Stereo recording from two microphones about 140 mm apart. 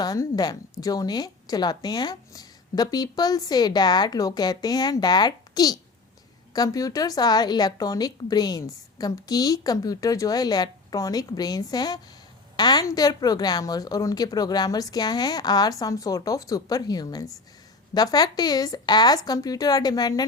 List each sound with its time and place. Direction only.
0.0 s a woman's voice: 25° left (ahead or behind)